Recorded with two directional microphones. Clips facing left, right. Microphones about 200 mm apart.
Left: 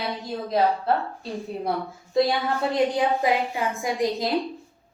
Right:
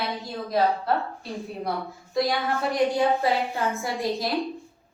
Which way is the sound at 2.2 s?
25° left (ahead or behind).